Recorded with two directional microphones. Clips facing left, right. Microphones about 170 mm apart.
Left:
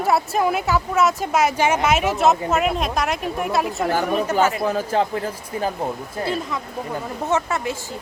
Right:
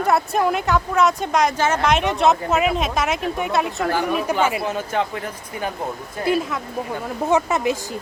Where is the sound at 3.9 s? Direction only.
45° left (ahead or behind).